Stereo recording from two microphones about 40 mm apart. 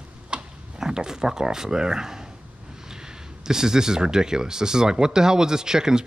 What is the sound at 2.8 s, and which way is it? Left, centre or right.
Speech, centre.